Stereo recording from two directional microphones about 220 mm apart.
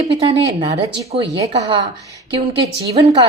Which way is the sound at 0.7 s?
30° right (ahead or behind).